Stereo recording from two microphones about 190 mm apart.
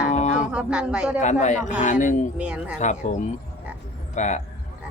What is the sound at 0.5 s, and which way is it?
Speech, 5° right (ahead or behind).